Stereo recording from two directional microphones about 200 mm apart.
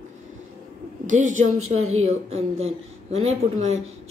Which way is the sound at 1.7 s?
90° right.